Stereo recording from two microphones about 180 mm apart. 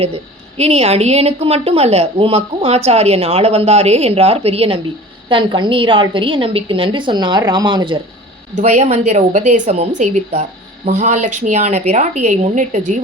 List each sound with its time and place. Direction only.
0.0 s a woman's voice: 35° right (ahead or behind)
8.5 s a woman's voice: 40° right (ahead or behind)